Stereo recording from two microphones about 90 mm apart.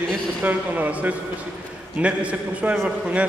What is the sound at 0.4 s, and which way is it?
A man's voice, 20° right (ahead or behind).